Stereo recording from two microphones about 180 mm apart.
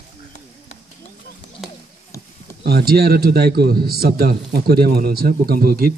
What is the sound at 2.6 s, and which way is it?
A man's voice, 60° right (ahead or behind).